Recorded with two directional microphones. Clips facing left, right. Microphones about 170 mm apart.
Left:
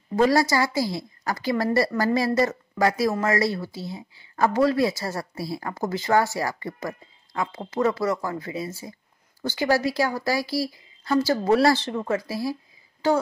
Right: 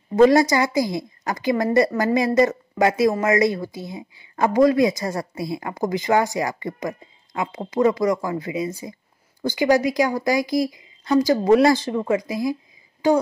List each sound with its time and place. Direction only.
0.1 s a woman's voice: 20° right (ahead or behind)